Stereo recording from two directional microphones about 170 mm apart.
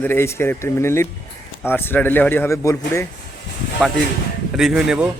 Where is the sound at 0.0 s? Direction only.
15° left (ahead or behind).